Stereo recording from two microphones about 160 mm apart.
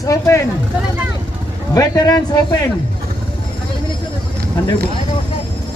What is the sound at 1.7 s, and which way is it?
Speech, 25° left (ahead or behind).